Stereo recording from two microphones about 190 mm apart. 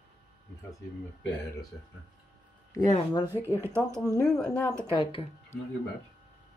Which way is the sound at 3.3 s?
10° right (ahead or behind).